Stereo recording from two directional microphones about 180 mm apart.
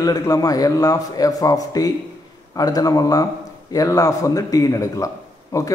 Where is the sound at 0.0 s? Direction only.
20° left (ahead or behind).